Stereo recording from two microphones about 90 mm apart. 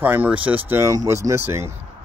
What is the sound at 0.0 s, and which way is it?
Speech, 20° right (ahead or behind).